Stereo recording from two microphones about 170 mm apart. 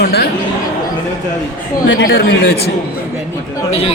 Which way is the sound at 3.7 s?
35° left (ahead or behind).